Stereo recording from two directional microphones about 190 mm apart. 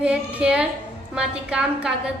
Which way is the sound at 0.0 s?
5° right (ahead or behind).